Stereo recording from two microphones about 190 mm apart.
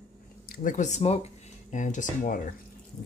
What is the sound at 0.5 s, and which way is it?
Speech, 40° left (ahead or behind).